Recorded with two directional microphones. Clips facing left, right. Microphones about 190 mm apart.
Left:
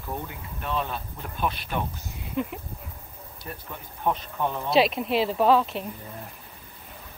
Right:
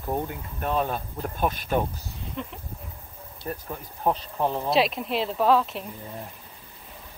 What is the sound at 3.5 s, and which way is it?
Speech, 35° right (ahead or behind).